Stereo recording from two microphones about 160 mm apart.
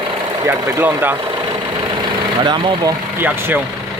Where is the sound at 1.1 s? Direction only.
30° right (ahead or behind).